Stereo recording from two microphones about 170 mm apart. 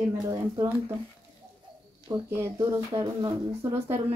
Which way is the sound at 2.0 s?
15° right (ahead or behind).